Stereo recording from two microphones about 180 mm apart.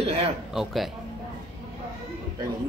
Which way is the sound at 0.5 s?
Centre (ahead or behind).